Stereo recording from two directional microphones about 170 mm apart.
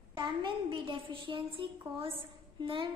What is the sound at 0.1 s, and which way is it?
A woman's voice, 25° right (ahead or behind).